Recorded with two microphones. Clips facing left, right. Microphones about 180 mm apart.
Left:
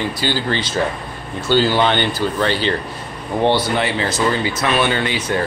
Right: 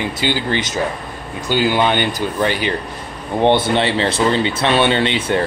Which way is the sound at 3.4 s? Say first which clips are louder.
Right 3 dB; 25° right (ahead or behind).